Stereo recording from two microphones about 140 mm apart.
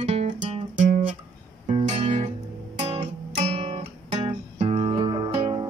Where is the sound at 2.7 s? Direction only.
50° right (ahead or behind).